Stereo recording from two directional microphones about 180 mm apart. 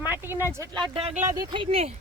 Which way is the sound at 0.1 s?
10° right (ahead or behind).